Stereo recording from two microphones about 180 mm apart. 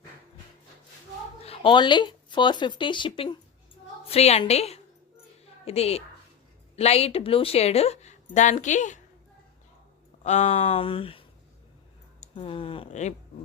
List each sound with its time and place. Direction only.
1.5 s speech: 25° left (ahead or behind); by 9.0 s 45° left (ahead or behind)
10.2 s speech: 40° left (ahead or behind)
12.3 s speech: 30° left (ahead or behind)